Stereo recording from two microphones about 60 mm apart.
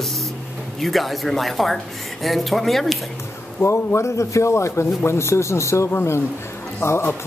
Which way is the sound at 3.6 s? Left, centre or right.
Left.